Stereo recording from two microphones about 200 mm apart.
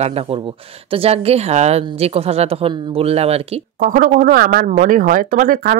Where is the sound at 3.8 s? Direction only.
40° right (ahead or behind).